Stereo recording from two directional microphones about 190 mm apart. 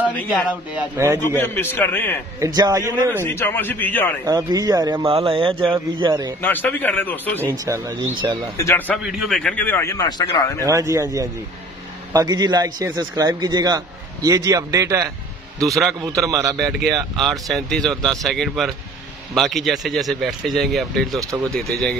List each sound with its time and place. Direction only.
0.1 s a man's voice: 10° left (ahead or behind)
0.5 s a man's voice: 10° right (ahead or behind)
1.2 s a man's voice: 15° left (ahead or behind)
2.4 s a man's voice: 20° right (ahead or behind)
3.3 s a man's voice: 10° left (ahead or behind)
4.3 s a man's voice: 20° right (ahead or behind)
6.4 s a man's voice: 10° left (ahead or behind)
7.4 s a man's voice: 15° right (ahead or behind)
8.5 s a man's voice: 10° left (ahead or behind)
10.6 s a man's voice: 15° right (ahead or behind)
16.1 s a man's voice: 15° right (ahead or behind)
17.2 s speech: centre (ahead or behind)
21.2 s a man's voice: 15° right (ahead or behind)